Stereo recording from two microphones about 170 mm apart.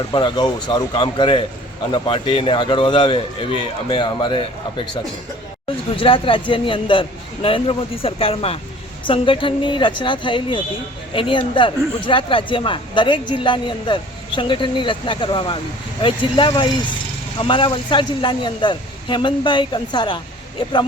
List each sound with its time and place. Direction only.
0.1 s speech: 25° left (ahead or behind)
6.0 s a man's voice: 30° left (ahead or behind)